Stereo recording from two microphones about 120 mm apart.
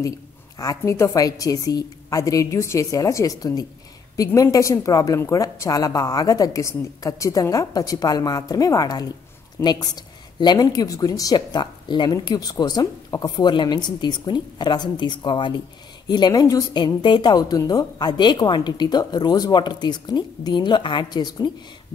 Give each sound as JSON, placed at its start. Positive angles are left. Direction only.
{"t": 0.6, "sound": "a woman's voice", "side_deg": 25}